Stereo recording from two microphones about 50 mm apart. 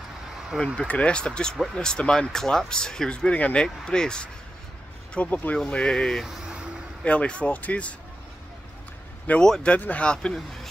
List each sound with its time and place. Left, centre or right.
0.7 s speech: left
3.3 s speech: left
5.1 s speech: left
5.7 s speech: left
6.2 s vehicle: centre
7.1 s speech: left
9.4 s speech: centre
9.8 s speech: left
10.0 s speech: centre
10.3 s speech: centre